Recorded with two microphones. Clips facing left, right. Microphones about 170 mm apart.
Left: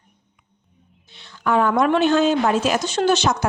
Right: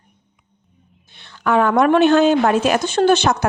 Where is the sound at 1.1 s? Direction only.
60° right (ahead or behind).